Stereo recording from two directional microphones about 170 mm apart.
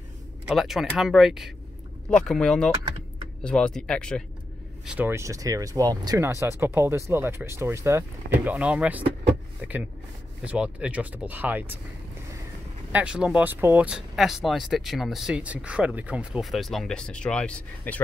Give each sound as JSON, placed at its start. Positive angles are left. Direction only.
{"t": 0.5, "sound": "speech", "side_deg": 0}
{"t": 4.8, "sound": "speech", "side_deg": -10}
{"t": 12.9, "sound": "speech", "side_deg": -5}